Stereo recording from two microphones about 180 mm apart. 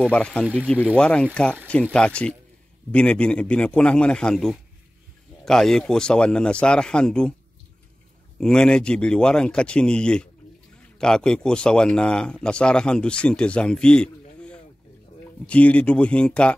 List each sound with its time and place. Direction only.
0.1 s speech: 5° left (ahead or behind)
8.4 s speech: 5° left (ahead or behind)